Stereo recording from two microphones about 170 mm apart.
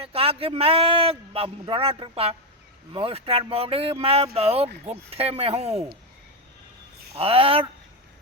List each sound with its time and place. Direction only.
0.0 s speech: 35° right (ahead or behind)
7.2 s speech: 35° right (ahead or behind)